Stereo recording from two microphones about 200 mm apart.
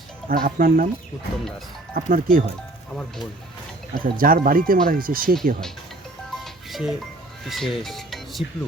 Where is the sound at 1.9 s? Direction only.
45° right (ahead or behind).